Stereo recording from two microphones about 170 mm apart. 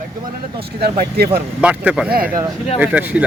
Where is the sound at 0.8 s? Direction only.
65° right (ahead or behind).